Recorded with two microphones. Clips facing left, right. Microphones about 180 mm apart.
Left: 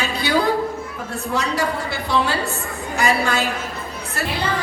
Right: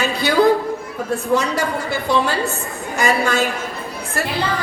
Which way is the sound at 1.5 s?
45° right (ahead or behind).